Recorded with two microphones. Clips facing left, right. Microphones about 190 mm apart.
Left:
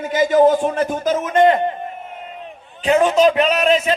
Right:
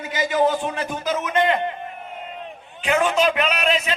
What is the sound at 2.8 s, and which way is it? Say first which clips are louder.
A man's voice: left 6 dB; 35° left (ahead or behind).